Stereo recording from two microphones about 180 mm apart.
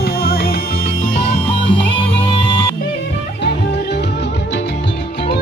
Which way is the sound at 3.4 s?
70° left (ahead or behind).